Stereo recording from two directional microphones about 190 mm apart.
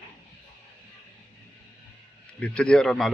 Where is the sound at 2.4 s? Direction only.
5° left (ahead or behind).